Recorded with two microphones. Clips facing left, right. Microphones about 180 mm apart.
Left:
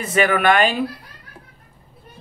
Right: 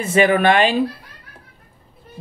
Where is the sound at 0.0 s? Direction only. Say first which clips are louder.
Right 3 dB; 25° right (ahead or behind).